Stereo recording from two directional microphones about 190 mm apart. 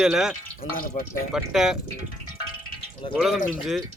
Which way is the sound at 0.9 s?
40° left (ahead or behind).